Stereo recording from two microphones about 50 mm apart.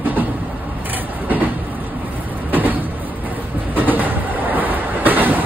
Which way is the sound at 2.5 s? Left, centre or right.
Right.